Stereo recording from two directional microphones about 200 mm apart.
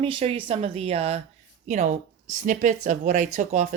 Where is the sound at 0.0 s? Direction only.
25° right (ahead or behind).